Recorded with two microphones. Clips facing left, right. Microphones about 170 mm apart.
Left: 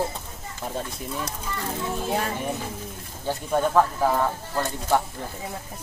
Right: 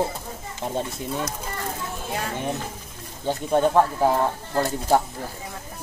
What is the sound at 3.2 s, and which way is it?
Speech, 25° right (ahead or behind).